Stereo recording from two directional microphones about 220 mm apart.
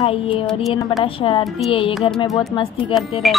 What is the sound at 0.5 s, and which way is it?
Music, centre (ahead or behind).